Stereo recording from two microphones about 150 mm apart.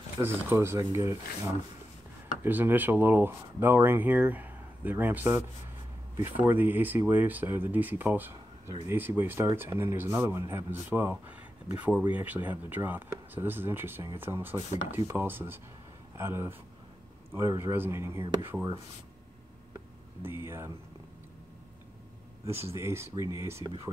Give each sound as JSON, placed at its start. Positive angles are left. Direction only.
{"t": 0.2, "sound": "speech", "side_deg": -15}
{"t": 19.7, "sound": "a sound", "side_deg": -15}
{"t": 22.7, "sound": "speech", "side_deg": -20}